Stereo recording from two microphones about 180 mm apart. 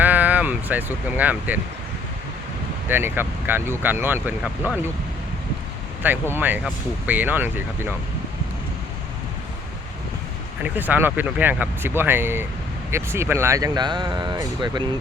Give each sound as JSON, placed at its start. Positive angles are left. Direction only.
{"t": 0.0, "sound": "speech", "side_deg": -10}
{"t": 2.9, "sound": "speech", "side_deg": -10}
{"t": 6.3, "sound": "speech", "side_deg": -10}
{"t": 10.6, "sound": "speech", "side_deg": -10}